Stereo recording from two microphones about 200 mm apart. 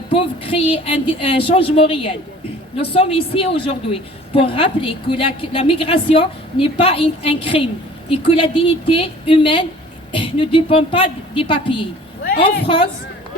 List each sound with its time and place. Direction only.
0.1 s a woman's voice: 25° left (ahead or behind)